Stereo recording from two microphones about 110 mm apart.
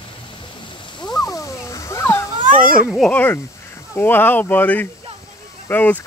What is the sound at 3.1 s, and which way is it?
Speech, 15° left (ahead or behind).